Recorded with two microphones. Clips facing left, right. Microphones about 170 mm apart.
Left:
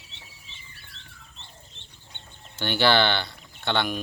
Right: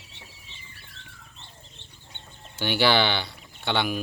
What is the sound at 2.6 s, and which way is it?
Speech, 10° right (ahead or behind).